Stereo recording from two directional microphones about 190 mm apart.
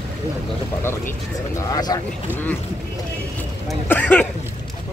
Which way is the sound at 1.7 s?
20° left (ahead or behind).